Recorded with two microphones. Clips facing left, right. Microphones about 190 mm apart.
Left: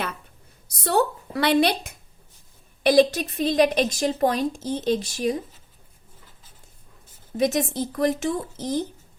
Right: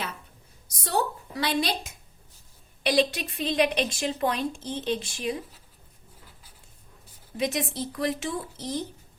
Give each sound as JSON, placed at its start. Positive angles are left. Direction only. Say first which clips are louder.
{"t": 0.9, "sound": "a sound", "louder": "left 6 dB", "side_deg": 60}
{"t": 2.8, "sound": "a woman's voice", "louder": "left 7 dB", "side_deg": 45}
{"t": 7.3, "sound": "a woman's voice", "louder": "left 6 dB", "side_deg": 45}